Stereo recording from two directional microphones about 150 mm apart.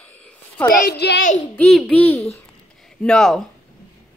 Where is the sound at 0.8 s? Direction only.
90° left.